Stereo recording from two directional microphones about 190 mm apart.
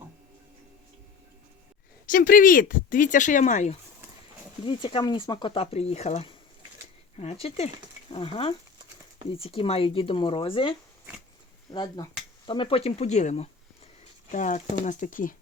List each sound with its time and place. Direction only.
2.0 s speech: 45° left (ahead or behind)
4.6 s speech: 25° left (ahead or behind); by 15.4 s 45° left (ahead or behind)